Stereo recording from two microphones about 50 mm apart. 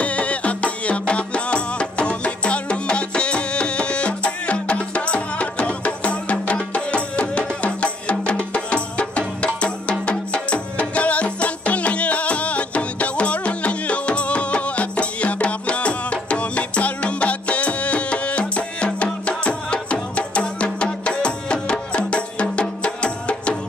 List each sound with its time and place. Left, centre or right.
0.0 s music: left